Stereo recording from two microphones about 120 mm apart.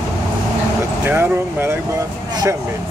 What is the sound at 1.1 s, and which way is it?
Speech, 20° right (ahead or behind).